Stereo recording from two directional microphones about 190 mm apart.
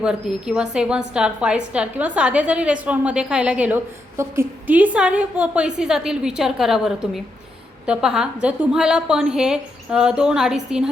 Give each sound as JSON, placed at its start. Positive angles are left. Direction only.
{"t": 0.0, "sound": "a woman's voice", "side_deg": -5}